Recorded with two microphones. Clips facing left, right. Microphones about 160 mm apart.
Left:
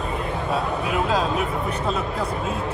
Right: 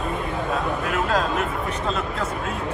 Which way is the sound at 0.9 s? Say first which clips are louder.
Left 1 dB; 5° left (ahead or behind).